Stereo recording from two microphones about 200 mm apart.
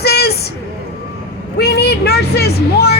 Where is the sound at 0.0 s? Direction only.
50° left (ahead or behind).